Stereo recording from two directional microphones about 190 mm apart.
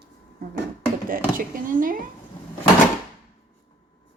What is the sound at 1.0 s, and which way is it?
Speech, 45° right (ahead or behind).